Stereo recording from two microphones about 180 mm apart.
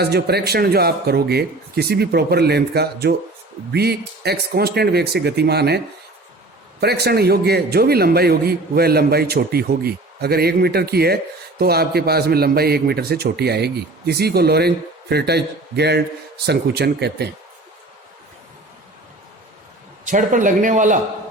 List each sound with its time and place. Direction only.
0.0 s a man's voice: 65° right (ahead or behind)
20.1 s speech: 45° right (ahead or behind)